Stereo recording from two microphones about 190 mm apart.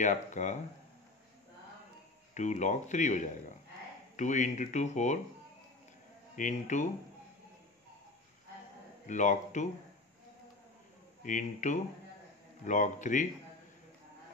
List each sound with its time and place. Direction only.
0.0 s speech: 40° left (ahead or behind)
2.3 s speech: 40° left (ahead or behind)
6.3 s speech: 40° left (ahead or behind)
9.0 s speech: 40° left (ahead or behind)
11.2 s speech: 40° left (ahead or behind)